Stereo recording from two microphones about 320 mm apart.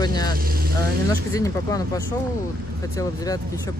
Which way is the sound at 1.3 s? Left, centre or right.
Centre.